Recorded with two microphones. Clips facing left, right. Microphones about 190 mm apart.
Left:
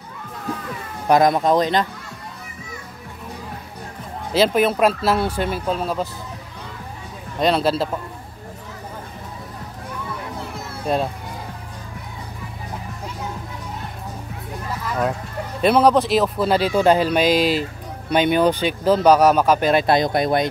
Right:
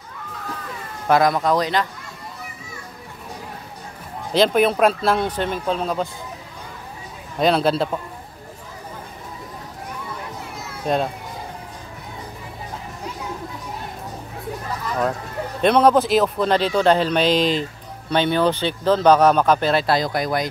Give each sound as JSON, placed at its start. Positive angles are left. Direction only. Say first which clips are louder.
{"t": 1.0, "sound": "speech", "louder": "left 2 dB", "side_deg": 20}
{"t": 4.3, "sound": "speech", "louder": "even", "side_deg": 0}
{"t": 7.3, "sound": "speech", "louder": "right 1 dB", "side_deg": 0}
{"t": 10.9, "sound": "speech", "louder": "even", "side_deg": 0}
{"t": 15.6, "sound": "speech", "louder": "even", "side_deg": 5}